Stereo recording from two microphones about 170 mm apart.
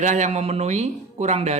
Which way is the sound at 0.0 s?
45° right (ahead or behind).